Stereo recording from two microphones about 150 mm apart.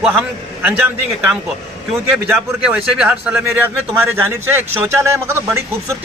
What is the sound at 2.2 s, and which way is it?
A man's voice, 10° right (ahead or behind).